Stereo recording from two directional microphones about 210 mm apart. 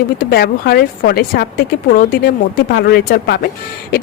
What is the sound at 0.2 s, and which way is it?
Speech, 45° left (ahead or behind).